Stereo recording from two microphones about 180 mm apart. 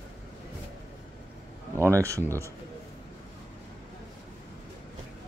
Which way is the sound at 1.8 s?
15° right (ahead or behind).